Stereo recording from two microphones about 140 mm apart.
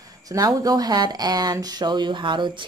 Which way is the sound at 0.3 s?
25° right (ahead or behind).